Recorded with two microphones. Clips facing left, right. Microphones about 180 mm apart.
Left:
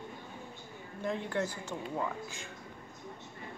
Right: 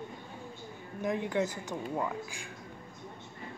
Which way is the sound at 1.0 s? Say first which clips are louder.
Right 3 dB; 15° right (ahead or behind).